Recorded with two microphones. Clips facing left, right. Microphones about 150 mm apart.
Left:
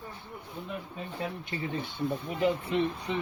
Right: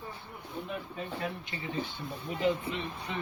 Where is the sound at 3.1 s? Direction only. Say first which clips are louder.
Left 5 dB; 25° left (ahead or behind).